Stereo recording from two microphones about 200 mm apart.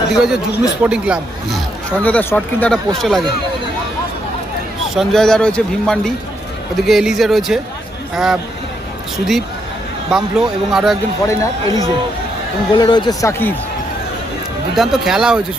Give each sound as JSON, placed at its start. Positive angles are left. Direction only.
{"t": 0.2, "sound": "speech", "side_deg": -5}
{"t": 4.9, "sound": "speech", "side_deg": 0}
{"t": 11.3, "sound": "a man's voice", "side_deg": 15}
{"t": 14.8, "sound": "speech", "side_deg": 0}